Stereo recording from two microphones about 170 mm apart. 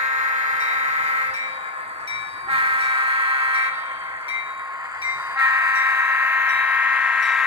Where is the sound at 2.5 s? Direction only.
35° right (ahead or behind).